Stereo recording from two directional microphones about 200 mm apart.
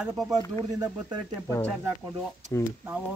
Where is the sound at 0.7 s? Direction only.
15° right (ahead or behind).